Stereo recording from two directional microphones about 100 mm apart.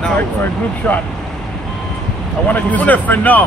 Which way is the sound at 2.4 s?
15° left (ahead or behind).